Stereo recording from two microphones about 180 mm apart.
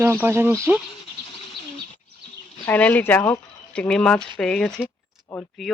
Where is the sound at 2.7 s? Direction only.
10° left (ahead or behind).